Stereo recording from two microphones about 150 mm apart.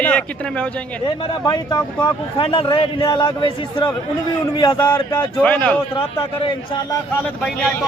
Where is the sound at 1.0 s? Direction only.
30° left (ahead or behind).